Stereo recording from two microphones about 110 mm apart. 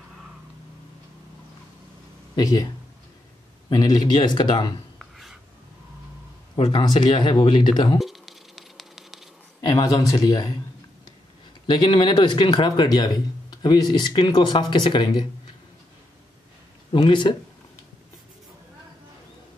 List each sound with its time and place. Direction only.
2.3 s speech: 35° left (ahead or behind)
3.7 s speech: 35° left (ahead or behind)
4.9 s a sound: centre (ahead or behind)
6.5 s speech: 45° left (ahead or behind)
8.0 s a sound: centre (ahead or behind)
9.7 s speech: 35° left (ahead or behind)
11.6 s speech: 45° left (ahead or behind)
16.9 s speech: 45° left (ahead or behind)